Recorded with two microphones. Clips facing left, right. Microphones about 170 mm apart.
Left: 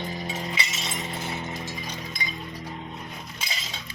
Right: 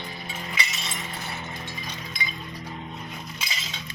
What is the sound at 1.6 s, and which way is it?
Chink, 45° left (ahead or behind).